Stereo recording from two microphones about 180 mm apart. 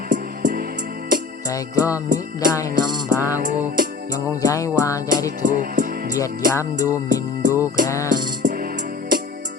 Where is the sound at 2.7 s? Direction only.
25° right (ahead or behind).